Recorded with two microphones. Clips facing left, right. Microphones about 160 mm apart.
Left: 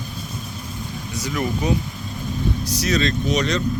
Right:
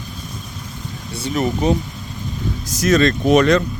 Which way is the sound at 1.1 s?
30° right (ahead or behind).